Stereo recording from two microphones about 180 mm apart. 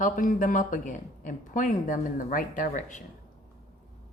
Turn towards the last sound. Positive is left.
turn(degrees=45)  # may be behind; listen again after turning